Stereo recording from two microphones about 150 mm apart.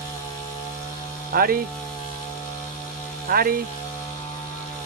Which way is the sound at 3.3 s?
80° right.